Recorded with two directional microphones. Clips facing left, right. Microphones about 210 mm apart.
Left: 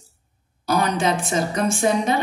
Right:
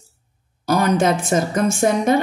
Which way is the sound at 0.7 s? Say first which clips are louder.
Right 4 dB; 45° right (ahead or behind).